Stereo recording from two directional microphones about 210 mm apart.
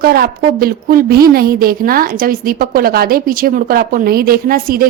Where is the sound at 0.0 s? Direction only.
45° right (ahead or behind).